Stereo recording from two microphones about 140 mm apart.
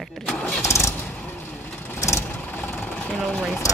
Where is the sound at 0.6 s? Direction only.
20° left (ahead or behind).